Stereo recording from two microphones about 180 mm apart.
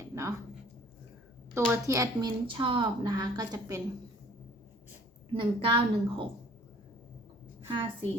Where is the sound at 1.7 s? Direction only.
15° right (ahead or behind).